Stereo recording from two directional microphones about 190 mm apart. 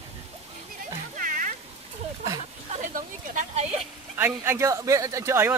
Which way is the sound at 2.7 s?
45° right (ahead or behind).